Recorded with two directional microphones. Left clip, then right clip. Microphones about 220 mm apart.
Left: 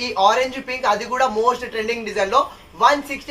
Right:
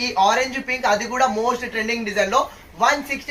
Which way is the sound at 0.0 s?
30° left (ahead or behind).